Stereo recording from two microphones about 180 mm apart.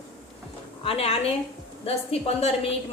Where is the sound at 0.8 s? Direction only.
35° left (ahead or behind).